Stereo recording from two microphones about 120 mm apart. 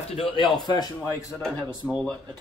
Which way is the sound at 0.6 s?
35° left (ahead or behind).